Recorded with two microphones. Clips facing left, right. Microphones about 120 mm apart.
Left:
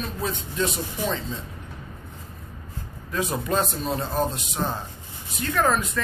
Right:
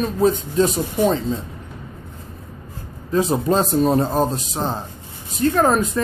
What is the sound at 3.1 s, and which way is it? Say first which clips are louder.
Speech: right 8 dB; 30° right (ahead or behind).